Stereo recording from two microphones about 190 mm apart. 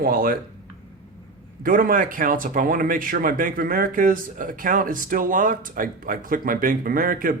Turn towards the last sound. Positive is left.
turn(degrees=-50)  # may be behind; listen again after turning